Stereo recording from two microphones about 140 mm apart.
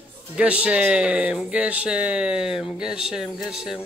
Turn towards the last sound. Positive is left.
turn(degrees=-5)  # may be behind; listen again after turning